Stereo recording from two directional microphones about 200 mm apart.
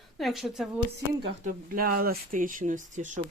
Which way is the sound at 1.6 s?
45° right (ahead or behind).